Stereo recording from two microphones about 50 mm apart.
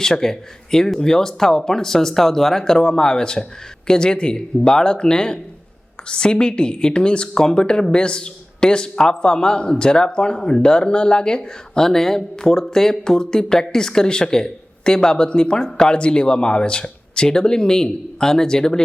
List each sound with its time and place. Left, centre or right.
0.0 s a woman's voice: centre